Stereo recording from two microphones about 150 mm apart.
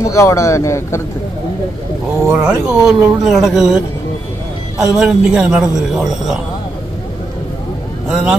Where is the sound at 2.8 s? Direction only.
Centre (ahead or behind).